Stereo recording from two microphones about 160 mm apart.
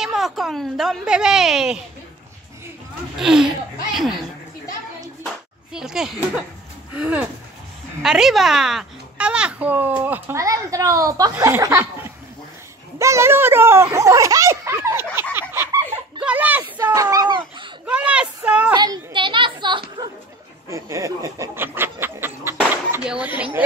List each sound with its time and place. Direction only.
0.0 s a woman's voice: centre (ahead or behind)
3.2 s a woman's voice: 5° right (ahead or behind)
5.7 s children playing: 5° right (ahead or behind)
6.9 s a child's voice: 10° right (ahead or behind)
15.3 s a sound: 15° right (ahead or behind)
16.3 s speech: 10° right (ahead or behind)
16.8 s a child's voice: 20° right (ahead or behind)
17.8 s speech: 10° right (ahead or behind)
18.8 s a child's voice: 30° right (ahead or behind); by 23.6 s 10° right (ahead or behind)